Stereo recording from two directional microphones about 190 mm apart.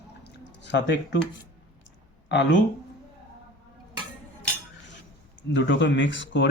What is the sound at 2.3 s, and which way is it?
Speech, 70° left (ahead or behind).